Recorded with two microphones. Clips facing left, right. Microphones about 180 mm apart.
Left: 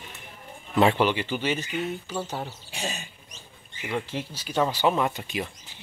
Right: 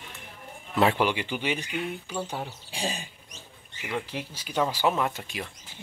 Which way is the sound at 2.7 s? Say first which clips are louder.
Right 1 dB; 30° right (ahead or behind).